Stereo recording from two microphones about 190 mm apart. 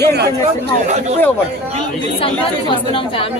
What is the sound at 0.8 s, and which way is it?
Speech, 35° right (ahead or behind).